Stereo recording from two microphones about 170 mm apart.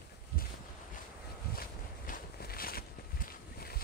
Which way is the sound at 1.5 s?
60° left (ahead or behind).